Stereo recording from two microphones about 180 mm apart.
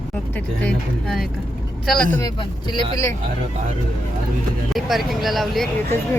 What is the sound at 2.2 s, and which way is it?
Speech, 25° left (ahead or behind).